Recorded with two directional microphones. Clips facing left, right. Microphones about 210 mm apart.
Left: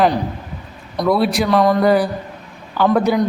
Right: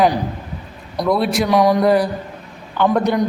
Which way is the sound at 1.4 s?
15° right (ahead or behind).